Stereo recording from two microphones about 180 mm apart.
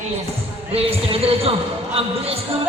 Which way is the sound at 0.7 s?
35° right (ahead or behind).